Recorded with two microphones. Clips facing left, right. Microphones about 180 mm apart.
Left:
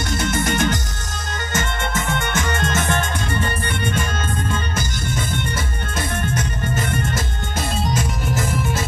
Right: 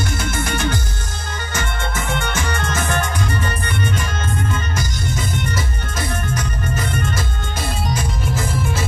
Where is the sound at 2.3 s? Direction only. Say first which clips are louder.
Left 1 dB; 20° left (ahead or behind).